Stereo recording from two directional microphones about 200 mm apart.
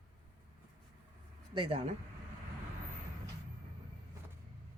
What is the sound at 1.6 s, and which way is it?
Speech, 25° right (ahead or behind).